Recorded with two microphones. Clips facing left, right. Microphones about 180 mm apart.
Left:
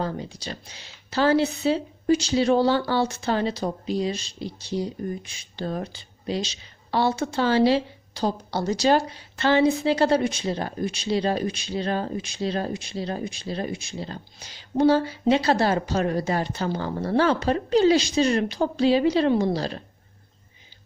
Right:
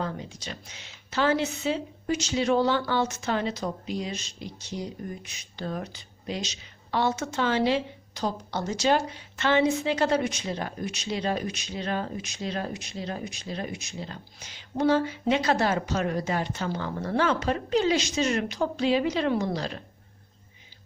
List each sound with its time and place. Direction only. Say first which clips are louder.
0.0 s speech: left 4 dB; 35° left (ahead or behind)